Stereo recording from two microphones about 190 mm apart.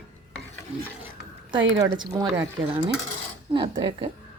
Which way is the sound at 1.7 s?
20° right (ahead or behind).